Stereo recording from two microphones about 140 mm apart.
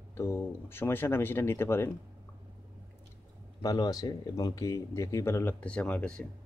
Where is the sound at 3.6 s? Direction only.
30° left (ahead or behind).